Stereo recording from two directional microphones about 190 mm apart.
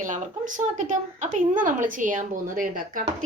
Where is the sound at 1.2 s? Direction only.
40° right (ahead or behind).